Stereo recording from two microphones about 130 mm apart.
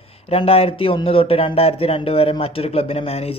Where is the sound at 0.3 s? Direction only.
45° left (ahead or behind).